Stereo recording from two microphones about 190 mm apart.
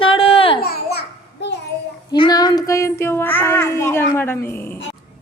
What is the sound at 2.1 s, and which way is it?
Child singing, 20° left (ahead or behind).